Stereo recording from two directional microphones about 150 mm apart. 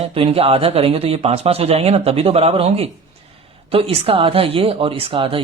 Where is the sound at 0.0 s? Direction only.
40° right (ahead or behind).